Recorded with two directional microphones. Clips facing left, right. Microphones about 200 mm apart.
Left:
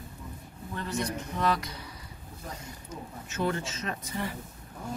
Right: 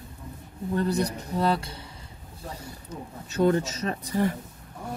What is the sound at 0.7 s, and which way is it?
Speech, 35° right (ahead or behind).